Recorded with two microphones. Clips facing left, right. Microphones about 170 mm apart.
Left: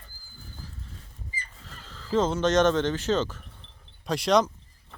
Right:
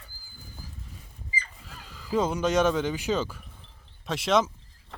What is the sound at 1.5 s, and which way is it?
Speech, 10° right (ahead or behind).